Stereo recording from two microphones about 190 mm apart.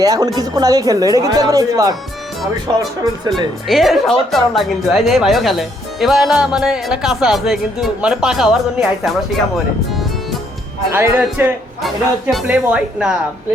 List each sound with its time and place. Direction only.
0.0 s a woman's voice: 20° right (ahead or behind)
3.0 s a woman's voice: 20° right (ahead or behind)
3.7 s a woman's voice: centre (ahead or behind)
10.9 s a woman's voice: 10° right (ahead or behind)